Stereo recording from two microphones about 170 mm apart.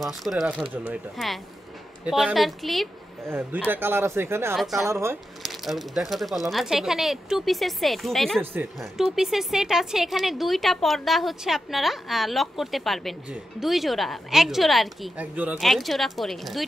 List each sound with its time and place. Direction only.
0.0 s speech: centre (ahead or behind)
3.3 s speech: 10° right (ahead or behind)
4.6 s speech: centre (ahead or behind)
4.9 s speech: 15° right (ahead or behind)
5.4 s speech: centre (ahead or behind)
15.6 s speech: centre (ahead or behind)